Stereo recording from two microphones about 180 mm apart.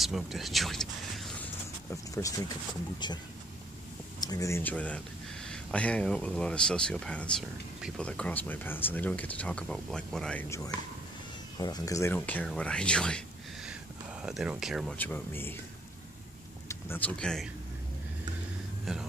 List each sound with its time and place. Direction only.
0.0 s a sound: centre (ahead or behind)
1.9 s speech: 15° left (ahead or behind)
4.2 s speech: 20° left (ahead or behind); by 10.4 s 5° left (ahead or behind)
11.5 s speech: 20° left (ahead or behind); by 13.2 s 5° left (ahead or behind)
14.2 s speech: 5° right (ahead or behind)
15.0 s speech: 10° left (ahead or behind)
16.6 s speech: 10° left (ahead or behind)
18.9 s speech: centre (ahead or behind)